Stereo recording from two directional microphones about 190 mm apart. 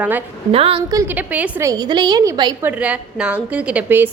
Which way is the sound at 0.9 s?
10° right (ahead or behind).